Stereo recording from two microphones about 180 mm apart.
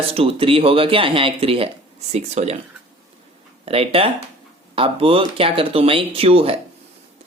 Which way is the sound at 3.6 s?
35° right (ahead or behind).